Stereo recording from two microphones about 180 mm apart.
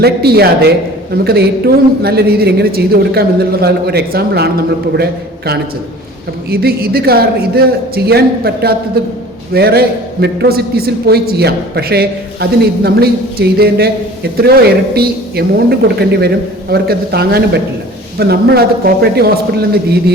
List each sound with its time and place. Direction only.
0.0 s a man's voice: 60° right (ahead or behind)
6.5 s a man's voice: 60° right (ahead or behind)